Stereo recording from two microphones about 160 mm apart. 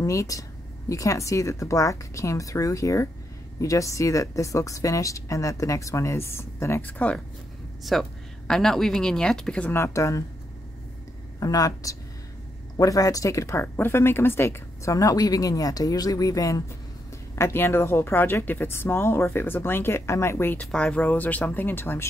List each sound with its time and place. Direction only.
0.0 s speech: 20° left (ahead or behind)
11.3 s speech: 20° left (ahead or behind)